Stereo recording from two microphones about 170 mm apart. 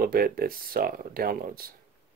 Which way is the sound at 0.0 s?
60° right (ahead or behind).